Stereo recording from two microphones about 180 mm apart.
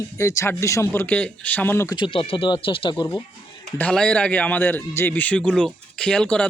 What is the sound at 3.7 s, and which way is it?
A man's voice, 5° left (ahead or behind).